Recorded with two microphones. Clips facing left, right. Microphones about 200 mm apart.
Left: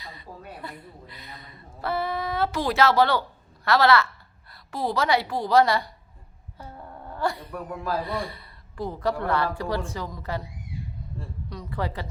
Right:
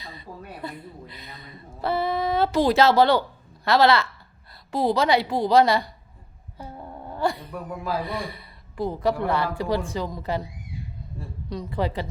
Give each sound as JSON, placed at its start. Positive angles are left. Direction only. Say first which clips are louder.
{"t": 0.6, "sound": "a woman's voice", "louder": "right 4 dB", "side_deg": -20}
{"t": 11.4, "sound": "speech", "louder": "right 5 dB", "side_deg": -20}